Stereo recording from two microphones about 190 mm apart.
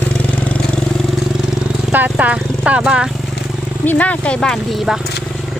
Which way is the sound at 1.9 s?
10° right (ahead or behind).